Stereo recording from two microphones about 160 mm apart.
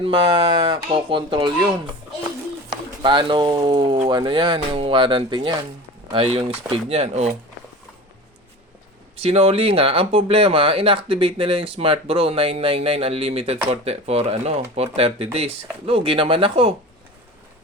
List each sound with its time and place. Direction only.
0.0 s speech: 35° right (ahead or behind)
3.0 s speech: 30° right (ahead or behind)
9.1 s speech: 40° right (ahead or behind)